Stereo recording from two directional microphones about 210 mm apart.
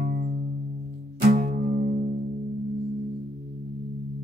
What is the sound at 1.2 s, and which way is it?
Music, 40° right (ahead or behind).